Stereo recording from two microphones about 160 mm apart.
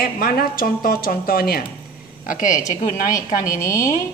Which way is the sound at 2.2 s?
55° left (ahead or behind).